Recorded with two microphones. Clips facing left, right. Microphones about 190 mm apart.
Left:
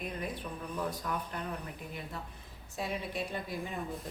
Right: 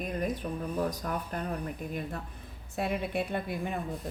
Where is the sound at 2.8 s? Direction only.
60° right (ahead or behind).